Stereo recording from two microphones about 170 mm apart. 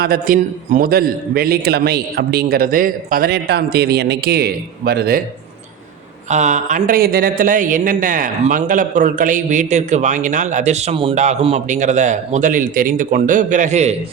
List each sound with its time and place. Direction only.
0.0 s a man's voice: 60° right (ahead or behind)
6.3 s a man's voice: 45° right (ahead or behind)